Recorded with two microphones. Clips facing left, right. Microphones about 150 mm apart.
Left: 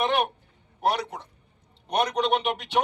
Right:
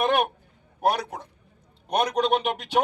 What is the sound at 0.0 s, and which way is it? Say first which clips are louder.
Speech: right 2 dB; 50° right (ahead or behind).